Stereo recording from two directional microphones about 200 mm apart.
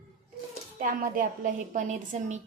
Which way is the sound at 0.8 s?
45° right (ahead or behind).